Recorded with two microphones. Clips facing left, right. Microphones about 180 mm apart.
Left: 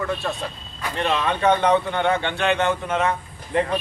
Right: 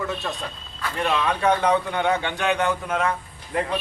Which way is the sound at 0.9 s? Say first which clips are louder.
Left 1 dB; centre (ahead or behind).